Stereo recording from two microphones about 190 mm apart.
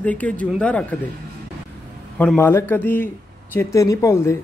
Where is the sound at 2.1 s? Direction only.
10° left (ahead or behind).